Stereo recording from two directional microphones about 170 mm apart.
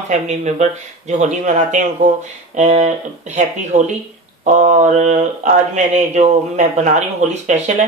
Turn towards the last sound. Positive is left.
turn(degrees=-40)  # may be behind; listen again after turning